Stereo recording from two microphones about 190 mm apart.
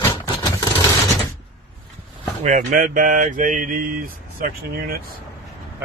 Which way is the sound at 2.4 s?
45° right (ahead or behind).